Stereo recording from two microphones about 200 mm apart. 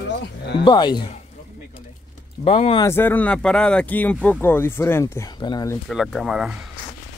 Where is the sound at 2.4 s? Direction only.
30° left (ahead or behind).